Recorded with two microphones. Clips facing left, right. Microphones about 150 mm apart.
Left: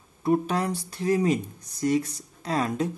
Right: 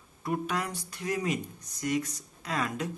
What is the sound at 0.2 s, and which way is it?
Speech, 30° left (ahead or behind).